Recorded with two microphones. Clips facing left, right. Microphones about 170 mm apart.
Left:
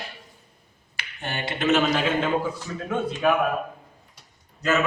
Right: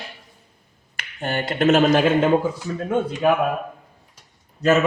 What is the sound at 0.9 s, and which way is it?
Speech, 50° right (ahead or behind).